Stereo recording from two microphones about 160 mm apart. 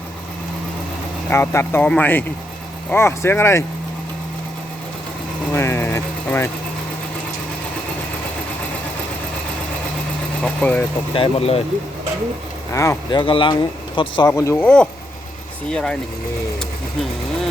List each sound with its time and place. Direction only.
1.3 s speech: 15° left (ahead or behind)
5.5 s vehicle: 15° left (ahead or behind)
10.4 s speech: 10° left (ahead or behind)
11.1 s speech: 35° left (ahead or behind)
12.7 s speech: 20° left (ahead or behind)
14.3 s speech: 20° left (ahead or behind)